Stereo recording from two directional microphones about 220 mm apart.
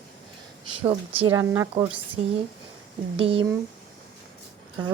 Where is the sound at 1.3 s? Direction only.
15° right (ahead or behind).